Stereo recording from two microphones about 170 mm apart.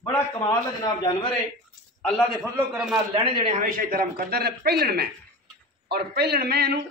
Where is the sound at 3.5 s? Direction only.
55° right (ahead or behind); by 6.7 s 70° right (ahead or behind).